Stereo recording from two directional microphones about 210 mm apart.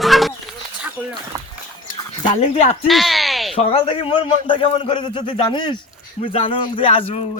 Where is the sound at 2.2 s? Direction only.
30° left (ahead or behind).